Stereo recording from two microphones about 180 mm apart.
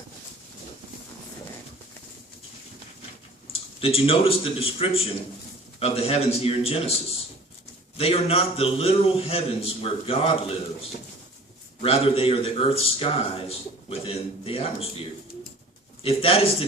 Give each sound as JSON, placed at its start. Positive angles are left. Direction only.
{"t": 3.8, "sound": "a man's voice", "side_deg": 30}
{"t": 7.9, "sound": "a man's voice", "side_deg": 35}
{"t": 11.8, "sound": "a man's voice", "side_deg": 30}
{"t": 16.0, "sound": "a man's voice", "side_deg": 30}